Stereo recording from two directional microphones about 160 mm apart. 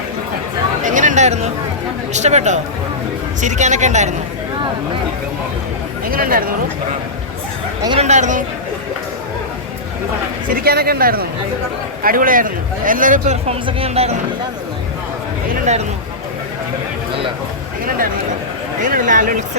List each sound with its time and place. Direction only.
0.8 s a sound: 50° right (ahead or behind)
2.1 s speech: 45° right (ahead or behind)
6.1 s speech: 65° right (ahead or behind)
7.9 s speech: 40° right (ahead or behind)
10.5 s speech: 75° right (ahead or behind); by 14.2 s 40° right (ahead or behind)
18.8 s a sound: 55° right (ahead or behind)